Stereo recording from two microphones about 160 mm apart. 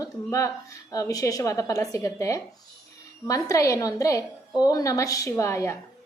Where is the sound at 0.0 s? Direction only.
20° left (ahead or behind).